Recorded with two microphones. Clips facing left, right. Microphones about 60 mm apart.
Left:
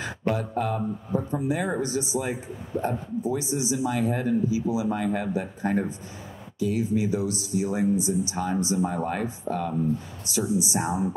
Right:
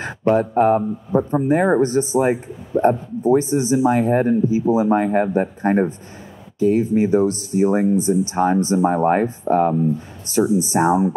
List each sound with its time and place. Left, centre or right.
0.0 s speech: right